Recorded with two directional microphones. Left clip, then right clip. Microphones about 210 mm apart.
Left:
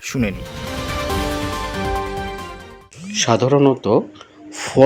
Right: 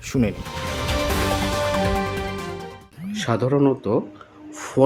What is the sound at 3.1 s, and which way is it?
Speech, 15° left (ahead or behind).